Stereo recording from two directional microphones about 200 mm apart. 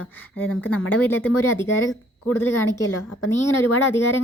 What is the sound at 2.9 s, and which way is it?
Speech, 90° left.